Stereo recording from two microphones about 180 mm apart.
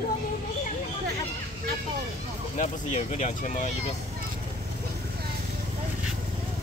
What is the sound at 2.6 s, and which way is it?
Speech, 40° left (ahead or behind).